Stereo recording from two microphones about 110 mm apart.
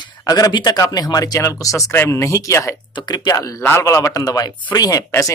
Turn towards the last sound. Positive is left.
turn(degrees=30)  # may be behind; listen again after turning